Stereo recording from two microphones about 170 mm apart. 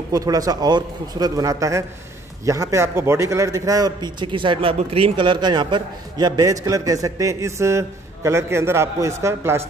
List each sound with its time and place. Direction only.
0.1 s a man's voice: 20° right (ahead or behind)